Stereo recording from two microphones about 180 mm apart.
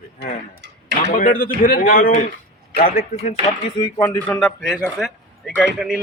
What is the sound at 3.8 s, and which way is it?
Speech, 15° left (ahead or behind).